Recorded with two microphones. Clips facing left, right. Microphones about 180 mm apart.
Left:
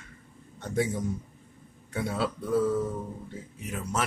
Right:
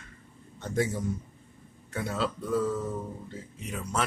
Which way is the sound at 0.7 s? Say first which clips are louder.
Even; 10° left (ahead or behind).